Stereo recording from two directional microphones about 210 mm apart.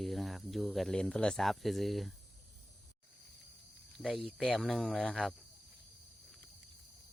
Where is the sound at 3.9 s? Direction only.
Centre (ahead or behind).